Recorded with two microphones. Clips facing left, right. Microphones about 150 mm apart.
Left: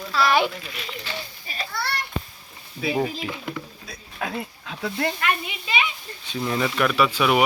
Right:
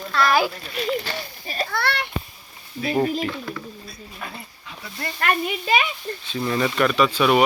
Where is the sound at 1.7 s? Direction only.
65° right (ahead or behind).